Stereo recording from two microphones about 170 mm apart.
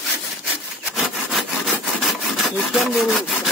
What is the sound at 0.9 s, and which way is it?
Rub, centre (ahead or behind).